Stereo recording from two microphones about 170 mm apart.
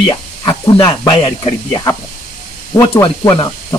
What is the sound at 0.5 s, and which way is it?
Speech, 25° left (ahead or behind).